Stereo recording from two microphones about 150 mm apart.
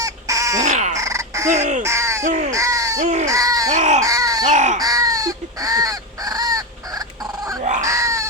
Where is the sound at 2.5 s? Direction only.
20° right (ahead or behind).